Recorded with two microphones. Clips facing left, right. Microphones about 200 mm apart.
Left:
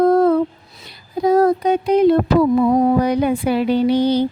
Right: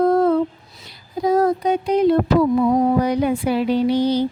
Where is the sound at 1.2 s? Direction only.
60° left (ahead or behind).